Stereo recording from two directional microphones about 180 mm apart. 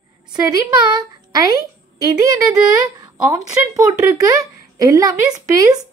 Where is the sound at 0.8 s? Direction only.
20° right (ahead or behind).